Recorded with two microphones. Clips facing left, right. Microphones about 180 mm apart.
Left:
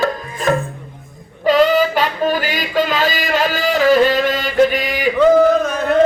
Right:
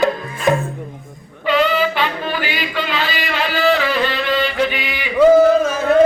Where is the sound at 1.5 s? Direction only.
40° left (ahead or behind).